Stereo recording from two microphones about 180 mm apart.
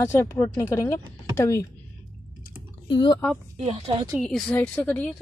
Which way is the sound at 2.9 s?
25° left (ahead or behind).